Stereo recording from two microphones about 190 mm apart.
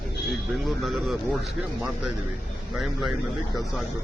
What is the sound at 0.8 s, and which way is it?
Speech, centre (ahead or behind).